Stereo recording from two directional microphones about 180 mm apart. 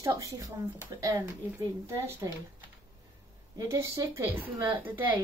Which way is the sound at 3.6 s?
15° right (ahead or behind).